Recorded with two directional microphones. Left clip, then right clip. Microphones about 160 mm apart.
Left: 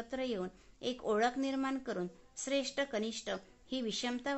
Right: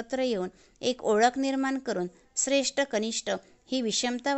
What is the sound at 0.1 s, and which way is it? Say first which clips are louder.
Speech: right 10 dB; 40° right (ahead or behind).